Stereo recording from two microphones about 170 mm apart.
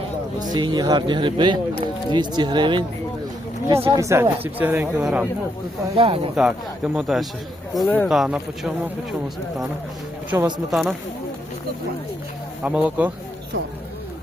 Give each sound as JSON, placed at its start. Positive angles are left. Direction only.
{"t": 0.3, "sound": "speech", "side_deg": -25}
{"t": 3.7, "sound": "speech", "side_deg": -15}
{"t": 6.0, "sound": "speech", "side_deg": -35}
{"t": 6.3, "sound": "speech", "side_deg": -5}
{"t": 10.3, "sound": "speech", "side_deg": -15}
{"t": 10.7, "sound": "speech", "side_deg": 0}
{"t": 12.6, "sound": "speech", "side_deg": -10}